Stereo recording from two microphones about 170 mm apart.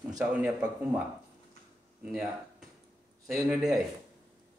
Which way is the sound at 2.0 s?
5° right (ahead or behind).